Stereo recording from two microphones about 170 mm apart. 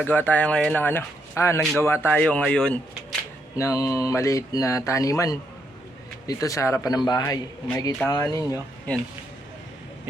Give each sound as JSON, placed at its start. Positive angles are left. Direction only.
{"t": 0.0, "sound": "speech", "side_deg": 10}
{"t": 3.6, "sound": "speech", "side_deg": 20}
{"t": 8.9, "sound": "speech", "side_deg": 10}